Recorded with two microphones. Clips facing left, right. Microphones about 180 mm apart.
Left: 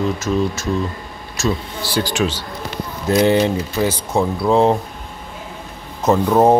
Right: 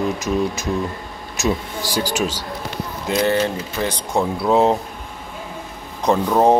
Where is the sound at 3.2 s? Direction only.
15° left (ahead or behind).